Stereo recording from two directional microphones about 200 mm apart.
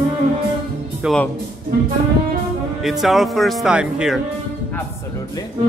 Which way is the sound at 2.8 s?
Centre (ahead or behind).